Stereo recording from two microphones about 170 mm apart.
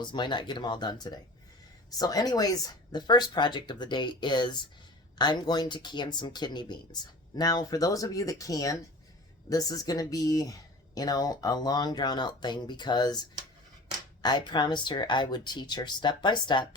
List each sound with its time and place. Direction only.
0.0 s speech: 25° left (ahead or behind)